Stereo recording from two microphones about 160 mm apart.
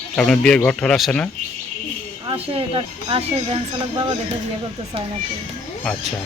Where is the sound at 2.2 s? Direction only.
35° right (ahead or behind).